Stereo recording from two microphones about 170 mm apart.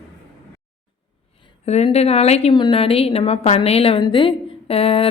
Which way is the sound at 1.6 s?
40° left (ahead or behind).